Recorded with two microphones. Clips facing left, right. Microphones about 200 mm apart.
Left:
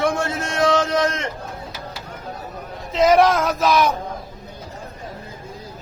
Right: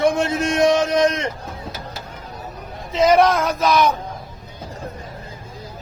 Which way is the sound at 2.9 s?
Centre (ahead or behind).